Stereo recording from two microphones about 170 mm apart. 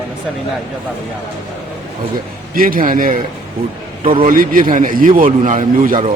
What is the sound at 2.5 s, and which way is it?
Speech, 55° right (ahead or behind).